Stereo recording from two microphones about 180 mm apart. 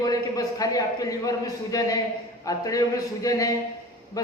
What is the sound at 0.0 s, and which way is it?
A man's voice, 20° left (ahead or behind).